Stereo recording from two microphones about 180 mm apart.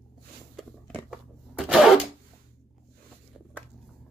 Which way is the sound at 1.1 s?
5° right (ahead or behind).